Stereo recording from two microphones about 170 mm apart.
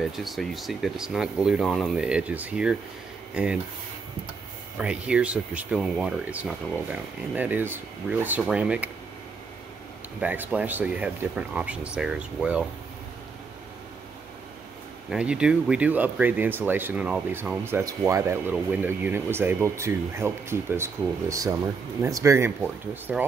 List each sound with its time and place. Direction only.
0.0 s speech: centre (ahead or behind)
4.7 s speech: 5° right (ahead or behind)
10.2 s speech: 10° right (ahead or behind)
15.0 s speech: 5° right (ahead or behind)